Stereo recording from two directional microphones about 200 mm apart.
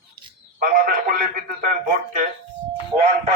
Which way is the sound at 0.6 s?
45° right (ahead or behind).